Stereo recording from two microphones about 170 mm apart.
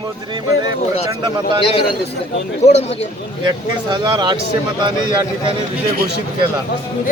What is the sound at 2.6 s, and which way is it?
Speech, 40° left (ahead or behind).